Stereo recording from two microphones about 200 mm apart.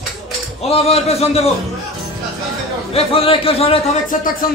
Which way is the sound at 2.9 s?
25° left (ahead or behind).